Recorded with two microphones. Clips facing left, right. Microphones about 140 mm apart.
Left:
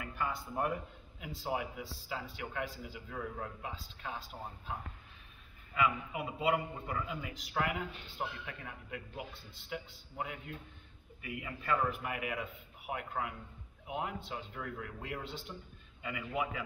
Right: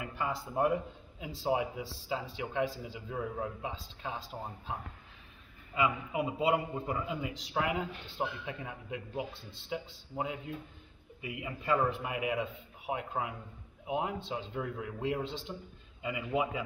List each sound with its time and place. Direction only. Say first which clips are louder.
0.0 s a man's voice: right 2 dB; 20° right (ahead or behind)
5.8 s a man's voice: right 2 dB; 25° right (ahead or behind)